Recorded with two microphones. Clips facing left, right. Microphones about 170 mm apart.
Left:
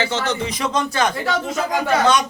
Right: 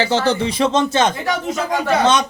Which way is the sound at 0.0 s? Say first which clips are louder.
Right 5 dB; 30° right (ahead or behind).